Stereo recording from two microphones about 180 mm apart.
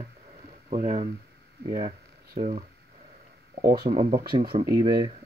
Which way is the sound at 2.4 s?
40° right (ahead or behind).